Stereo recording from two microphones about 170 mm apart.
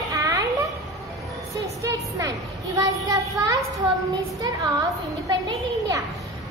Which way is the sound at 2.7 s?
20° right (ahead or behind).